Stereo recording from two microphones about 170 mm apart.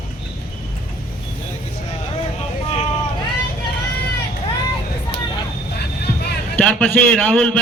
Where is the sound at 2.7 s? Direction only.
40° left (ahead or behind).